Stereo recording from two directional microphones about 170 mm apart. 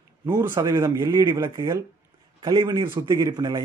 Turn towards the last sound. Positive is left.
turn(degrees=-25)  # may be behind; listen again after turning